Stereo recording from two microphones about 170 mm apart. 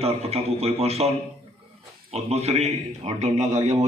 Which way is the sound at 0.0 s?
35° right (ahead or behind).